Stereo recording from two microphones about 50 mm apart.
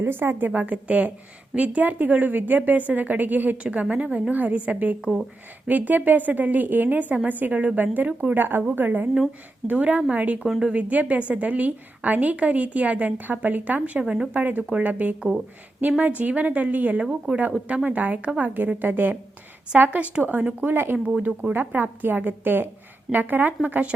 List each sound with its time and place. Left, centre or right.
0.0 s a woman's voice: right
3.6 s a woman's voice: right
8.4 s a woman's voice: right
9.6 s a woman's voice: right
14.0 s a woman's voice: centre
14.3 s a woman's voice: right
17.0 s a woman's voice: centre
17.8 s a woman's voice: right
21.2 s a woman's voice: right